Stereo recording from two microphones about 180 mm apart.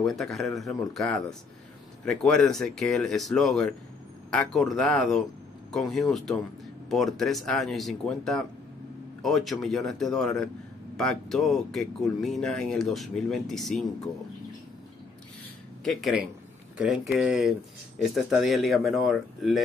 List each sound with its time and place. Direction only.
0.0 s speech: centre (ahead or behind)
15.8 s speech: centre (ahead or behind)